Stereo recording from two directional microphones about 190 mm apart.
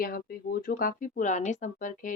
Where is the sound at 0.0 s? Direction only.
50° left (ahead or behind).